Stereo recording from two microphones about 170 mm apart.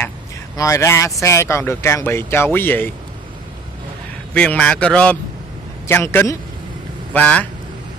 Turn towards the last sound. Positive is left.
turn(degrees=10)  # may be behind; listen again after turning